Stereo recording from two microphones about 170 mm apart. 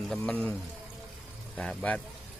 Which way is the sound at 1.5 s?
10° left (ahead or behind).